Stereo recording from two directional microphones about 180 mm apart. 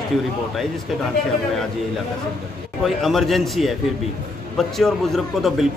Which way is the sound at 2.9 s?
Centre (ahead or behind).